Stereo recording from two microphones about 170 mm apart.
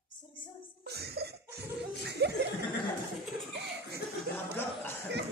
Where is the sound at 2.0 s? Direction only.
75° right (ahead or behind).